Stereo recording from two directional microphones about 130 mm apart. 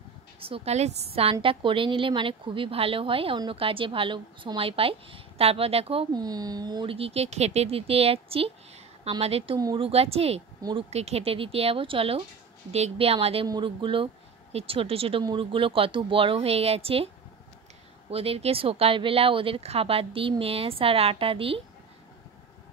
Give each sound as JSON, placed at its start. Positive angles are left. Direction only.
{"t": 0.4, "sound": "a woman's voice", "side_deg": -50}
{"t": 1.3, "sound": "a woman's voice", "side_deg": -40}
{"t": 6.1, "sound": "a woman's voice", "side_deg": -30}
{"t": 10.6, "sound": "speech", "side_deg": -35}
{"t": 10.9, "sound": "a woman's voice", "side_deg": -55}
{"t": 13.5, "sound": "a woman's voice", "side_deg": -35}
{"t": 18.1, "sound": "a woman's voice", "side_deg": -50}